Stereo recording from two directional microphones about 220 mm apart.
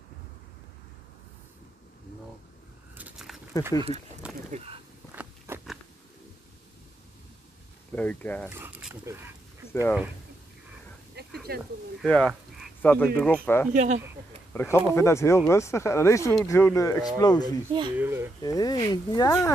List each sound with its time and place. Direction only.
3.0 s a sound: centre (ahead or behind)
5.1 s biting: 10° right (ahead or behind)
7.9 s speech: 5° left (ahead or behind)
8.5 s speech: 10° right (ahead or behind)
9.7 s speech: 10° left (ahead or behind)
11.5 s speech: 45° right (ahead or behind)
12.0 s speech: 5° left (ahead or behind)
13.7 s speech: 35° right (ahead or behind)
14.5 s a sound: 10° left (ahead or behind)
14.9 s speech: 15° left (ahead or behind)
17.9 s speech: 10° right (ahead or behind)
18.4 s speech: 15° left (ahead or behind)